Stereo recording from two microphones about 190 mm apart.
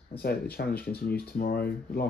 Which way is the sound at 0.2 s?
55° left (ahead or behind).